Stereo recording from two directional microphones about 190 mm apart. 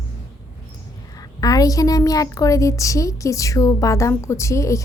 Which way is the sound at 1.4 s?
20° left (ahead or behind).